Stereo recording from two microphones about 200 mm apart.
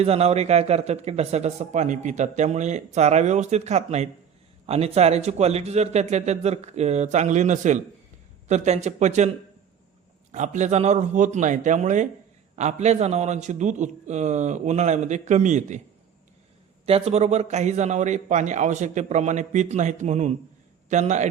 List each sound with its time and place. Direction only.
0.0 s a man's voice: 30° right (ahead or behind)
10.3 s a man's voice: 35° right (ahead or behind)
16.8 s a man's voice: 30° right (ahead or behind)